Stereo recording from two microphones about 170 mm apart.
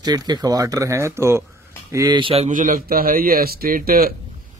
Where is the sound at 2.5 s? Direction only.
55° right (ahead or behind).